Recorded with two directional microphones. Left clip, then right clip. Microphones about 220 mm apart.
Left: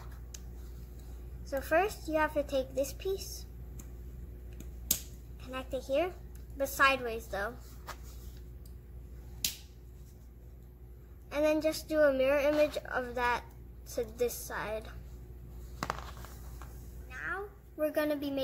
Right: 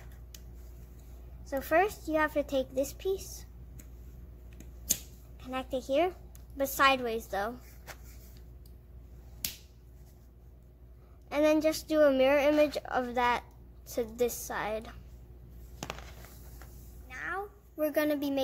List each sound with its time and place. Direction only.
1.4 s a woman's voice: 35° right (ahead or behind)
5.4 s a woman's voice: 40° right (ahead or behind)
11.2 s a woman's voice: 40° right (ahead or behind)
17.1 s cat: 45° right (ahead or behind)